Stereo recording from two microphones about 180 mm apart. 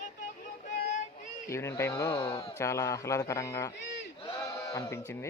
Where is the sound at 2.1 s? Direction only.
25° left (ahead or behind).